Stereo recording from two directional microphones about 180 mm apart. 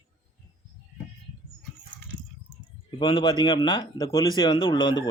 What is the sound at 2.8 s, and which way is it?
Speech, 25° left (ahead or behind).